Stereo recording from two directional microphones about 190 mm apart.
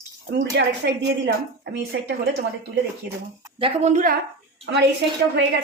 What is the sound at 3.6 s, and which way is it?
Speech, 35° right (ahead or behind).